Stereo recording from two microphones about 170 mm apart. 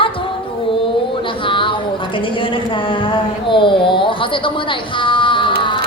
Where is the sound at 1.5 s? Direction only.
30° left (ahead or behind).